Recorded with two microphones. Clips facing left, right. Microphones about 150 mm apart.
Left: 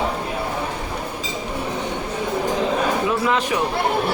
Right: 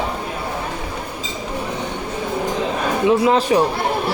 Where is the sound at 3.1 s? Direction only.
30° right (ahead or behind).